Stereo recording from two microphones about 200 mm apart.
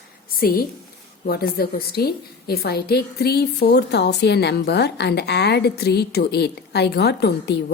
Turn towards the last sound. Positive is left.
turn(degrees=55)  # may be behind; listen again after turning